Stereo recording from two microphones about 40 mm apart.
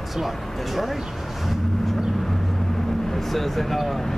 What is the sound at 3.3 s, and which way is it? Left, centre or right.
Speech, centre.